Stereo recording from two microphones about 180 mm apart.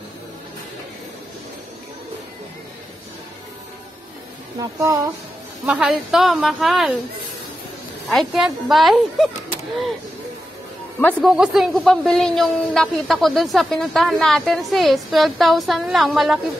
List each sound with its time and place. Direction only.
4.6 s speech: 20° right (ahead or behind)
5.7 s a man's voice: 5° right (ahead or behind)
8.1 s a man's voice: centre (ahead or behind)
11.0 s speech: 10° left (ahead or behind)
11.2 s a man's voice: centre (ahead or behind)